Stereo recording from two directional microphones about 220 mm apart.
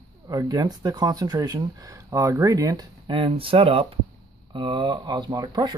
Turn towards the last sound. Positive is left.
turn(degrees=-15)  # may be behind; listen again after turning